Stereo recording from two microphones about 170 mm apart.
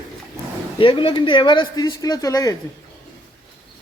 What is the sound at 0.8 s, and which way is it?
Speech, 30° left (ahead or behind).